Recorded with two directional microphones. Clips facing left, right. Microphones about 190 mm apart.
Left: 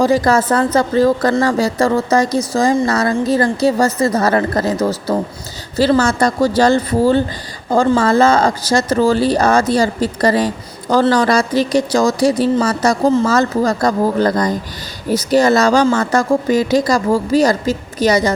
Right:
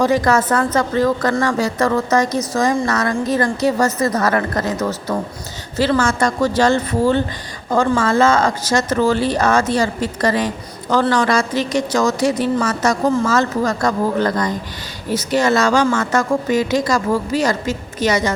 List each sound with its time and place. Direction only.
0.0 s speech: 30° left (ahead or behind)